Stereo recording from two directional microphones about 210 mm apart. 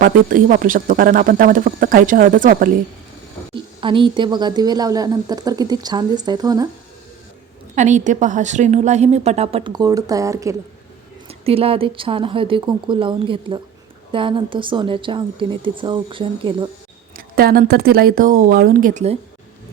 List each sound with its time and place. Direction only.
0.0 s a woman's voice: 40° right (ahead or behind)
3.5 s a woman's voice: 25° right (ahead or behind)
7.8 s a woman's voice: 35° right (ahead or behind); by 10.5 s 15° right (ahead or behind)
11.3 s a woman's voice: 30° right (ahead or behind)
17.2 s speech: 45° right (ahead or behind)